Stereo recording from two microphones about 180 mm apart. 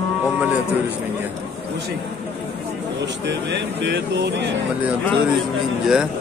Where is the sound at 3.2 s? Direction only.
80° right.